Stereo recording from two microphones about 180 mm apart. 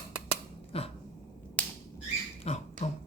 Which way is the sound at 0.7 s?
35° left (ahead or behind).